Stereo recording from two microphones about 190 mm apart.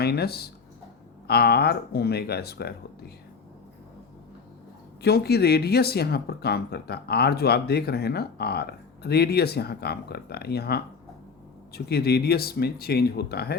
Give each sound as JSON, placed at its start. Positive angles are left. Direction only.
{"t": 0.0, "sound": "speech", "side_deg": 55}
{"t": 5.0, "sound": "speech", "side_deg": 60}